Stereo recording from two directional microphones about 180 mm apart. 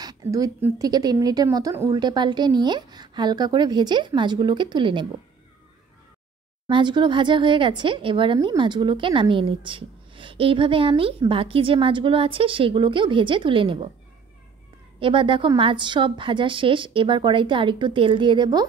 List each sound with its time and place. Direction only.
0.0 s speech: 20° right (ahead or behind)
6.7 s speech: 25° right (ahead or behind)
15.0 s speech: 30° right (ahead or behind)